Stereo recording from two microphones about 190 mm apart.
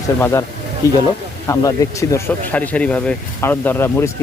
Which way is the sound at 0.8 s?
15° left (ahead or behind).